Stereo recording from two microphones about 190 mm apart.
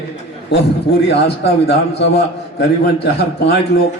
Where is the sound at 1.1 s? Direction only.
60° left (ahead or behind).